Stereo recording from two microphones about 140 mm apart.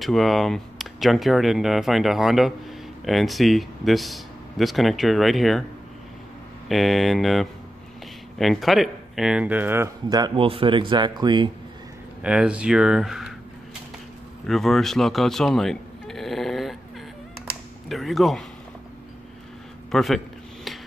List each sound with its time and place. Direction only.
0.0 s speech: centre (ahead or behind)
6.7 s speech: centre (ahead or behind)
10.0 s speech: 25° right (ahead or behind)
10.3 s speech: 40° right (ahead or behind)
12.2 s speech: 10° right (ahead or behind)
14.4 s speech: centre (ahead or behind)
17.8 s speech: centre (ahead or behind)
19.9 s a man's voice: centre (ahead or behind)